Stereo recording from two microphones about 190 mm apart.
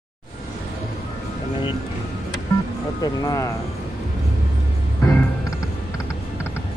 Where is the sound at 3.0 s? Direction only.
20° left (ahead or behind).